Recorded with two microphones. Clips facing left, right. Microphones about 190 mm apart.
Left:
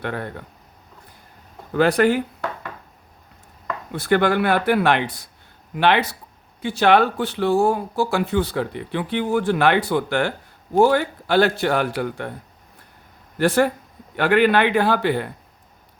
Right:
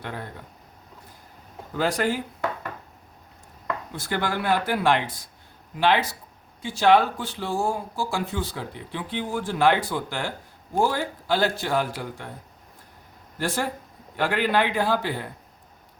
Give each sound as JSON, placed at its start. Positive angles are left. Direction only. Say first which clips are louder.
{"t": 0.0, "sound": "speech", "louder": "left 7 dB", "side_deg": 65}
{"t": 1.7, "sound": "speech", "louder": "left 8 dB", "side_deg": 65}
{"t": 3.9, "sound": "speech", "louder": "left 11 dB", "side_deg": 65}
{"t": 13.4, "sound": "speech", "louder": "left 9 dB", "side_deg": 65}